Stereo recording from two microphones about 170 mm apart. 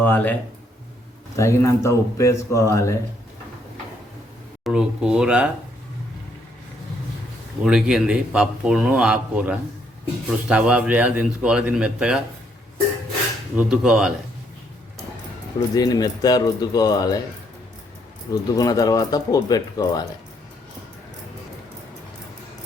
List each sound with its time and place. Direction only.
0.0 s speech: 10° left (ahead or behind)
1.4 s speech: 15° left (ahead or behind)
4.6 s a sound: 5° right (ahead or behind)
7.6 s a man's voice: 5° right (ahead or behind)
13.6 s a man's voice: 5° right (ahead or behind)
15.7 s speech: 20° left (ahead or behind)
18.3 s speech: 20° left (ahead or behind)